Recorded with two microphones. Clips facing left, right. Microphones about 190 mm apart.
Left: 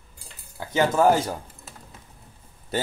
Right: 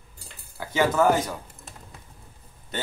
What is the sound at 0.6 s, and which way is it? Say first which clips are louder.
Speech: left 1 dB; 30° left (ahead or behind).